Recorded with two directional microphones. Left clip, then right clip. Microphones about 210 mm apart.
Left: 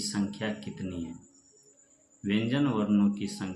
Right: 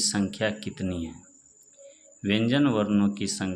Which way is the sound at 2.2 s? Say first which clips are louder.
Right 5 dB; 50° right (ahead or behind).